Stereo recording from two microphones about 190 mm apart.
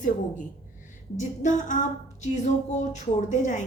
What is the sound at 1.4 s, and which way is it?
Speech, 40° left (ahead or behind).